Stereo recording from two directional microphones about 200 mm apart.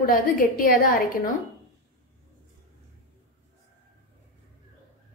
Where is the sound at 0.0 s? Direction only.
45° left (ahead or behind).